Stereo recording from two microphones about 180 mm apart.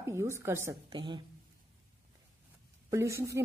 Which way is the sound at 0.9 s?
25° right (ahead or behind).